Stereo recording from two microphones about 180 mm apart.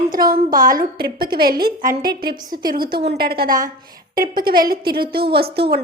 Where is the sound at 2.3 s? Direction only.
20° right (ahead or behind).